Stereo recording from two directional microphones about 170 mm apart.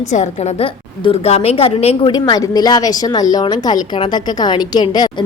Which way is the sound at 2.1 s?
25° left (ahead or behind).